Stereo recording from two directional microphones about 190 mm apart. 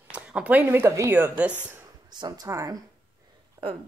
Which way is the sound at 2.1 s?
20° right (ahead or behind).